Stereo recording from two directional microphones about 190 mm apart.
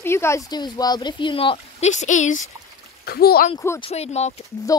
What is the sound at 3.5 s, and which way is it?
Speech, 15° left (ahead or behind).